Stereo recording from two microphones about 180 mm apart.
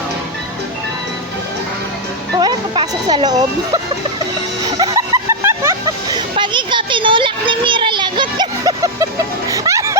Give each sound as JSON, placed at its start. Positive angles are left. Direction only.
{"t": 2.4, "sound": "speech", "side_deg": -25}
{"t": 4.8, "sound": "snicker", "side_deg": -20}
{"t": 6.1, "sound": "a child's voice", "side_deg": -25}
{"t": 9.5, "sound": "music", "side_deg": -15}